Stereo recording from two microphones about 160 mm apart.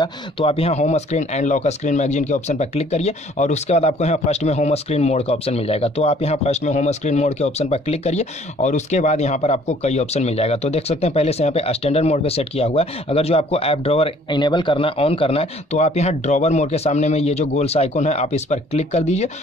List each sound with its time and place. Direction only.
0.0 s speech: 35° left (ahead or behind)